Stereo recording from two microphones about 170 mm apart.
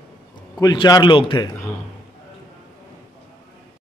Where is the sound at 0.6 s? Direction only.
25° left (ahead or behind).